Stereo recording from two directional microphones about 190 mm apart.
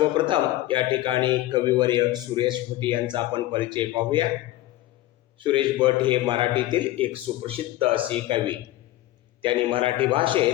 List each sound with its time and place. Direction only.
0.0 s a man's voice: 25° right (ahead or behind)
5.4 s a man's voice: 25° right (ahead or behind)